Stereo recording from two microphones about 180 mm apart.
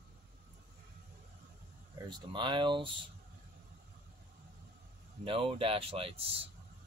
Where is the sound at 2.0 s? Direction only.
25° right (ahead or behind).